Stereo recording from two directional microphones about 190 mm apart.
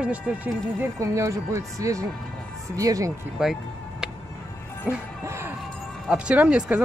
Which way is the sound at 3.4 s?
5° right (ahead or behind).